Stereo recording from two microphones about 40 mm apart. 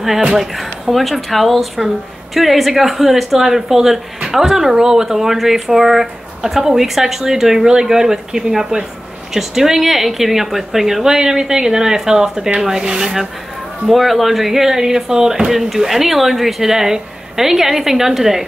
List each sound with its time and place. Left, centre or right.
0.4 s speech: centre; by 13.1 s right
13.8 s speech: centre